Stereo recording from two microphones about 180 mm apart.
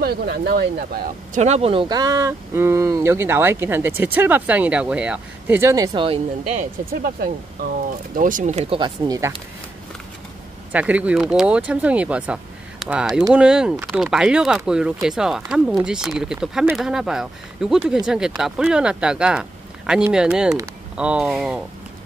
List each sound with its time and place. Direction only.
0.0 s speech: 60° right (ahead or behind); by 5.9 s 15° right (ahead or behind)
5.9 s speech: 30° right (ahead or behind)
10.7 s speech: 10° right (ahead or behind)